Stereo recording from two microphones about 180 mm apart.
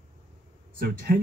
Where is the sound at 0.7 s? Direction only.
55° right (ahead or behind).